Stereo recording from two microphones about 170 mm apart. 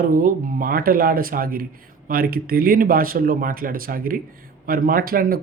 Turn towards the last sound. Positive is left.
turn(degrees=-60)  # may be behind; listen again after turning